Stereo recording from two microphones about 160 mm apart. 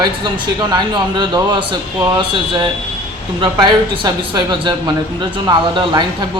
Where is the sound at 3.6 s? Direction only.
25° right (ahead or behind).